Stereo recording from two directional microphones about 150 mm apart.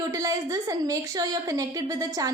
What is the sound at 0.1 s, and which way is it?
A woman's voice, 25° right (ahead or behind).